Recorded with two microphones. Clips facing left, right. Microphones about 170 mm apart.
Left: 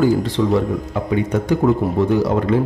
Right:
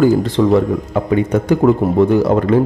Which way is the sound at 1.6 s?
90° right.